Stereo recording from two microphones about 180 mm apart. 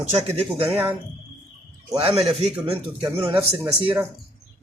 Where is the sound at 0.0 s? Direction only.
40° right (ahead or behind).